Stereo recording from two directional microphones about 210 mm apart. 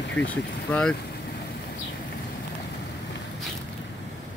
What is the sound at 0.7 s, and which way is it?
Speech, 5° left (ahead or behind).